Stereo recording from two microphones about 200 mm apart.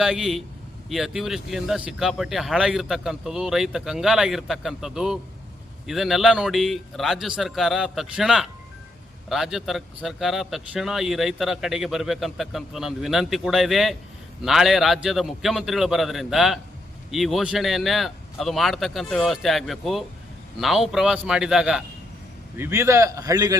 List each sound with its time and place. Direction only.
0.0 s a man's voice: centre (ahead or behind); by 23.6 s 20° right (ahead or behind)